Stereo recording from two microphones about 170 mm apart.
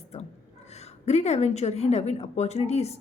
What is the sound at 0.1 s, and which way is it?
A woman's voice, 40° left (ahead or behind).